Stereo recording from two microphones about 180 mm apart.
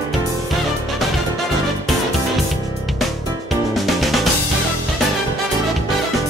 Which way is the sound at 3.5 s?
Centre (ahead or behind).